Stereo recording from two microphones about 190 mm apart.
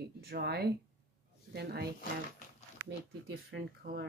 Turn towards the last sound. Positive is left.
turn(degrees=-55)  # may be behind; listen again after turning